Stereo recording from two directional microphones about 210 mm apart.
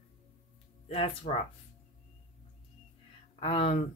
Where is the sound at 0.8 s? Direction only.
30° left (ahead or behind).